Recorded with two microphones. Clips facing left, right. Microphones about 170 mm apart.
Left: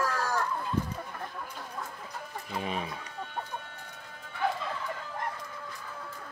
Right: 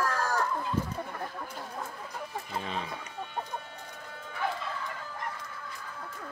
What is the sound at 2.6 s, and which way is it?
Chicken, 15° left (ahead or behind).